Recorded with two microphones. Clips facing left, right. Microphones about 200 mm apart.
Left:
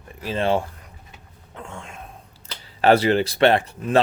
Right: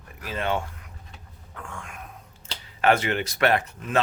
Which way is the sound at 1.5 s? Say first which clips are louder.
Left 3 dB; 25° left (ahead or behind).